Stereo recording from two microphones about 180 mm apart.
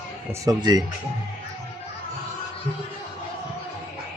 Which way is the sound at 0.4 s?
20° right (ahead or behind).